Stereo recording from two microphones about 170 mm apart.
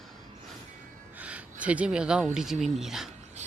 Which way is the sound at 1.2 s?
5° right (ahead or behind).